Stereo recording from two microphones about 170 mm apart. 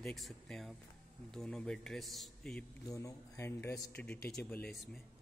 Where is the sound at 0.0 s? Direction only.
Centre (ahead or behind).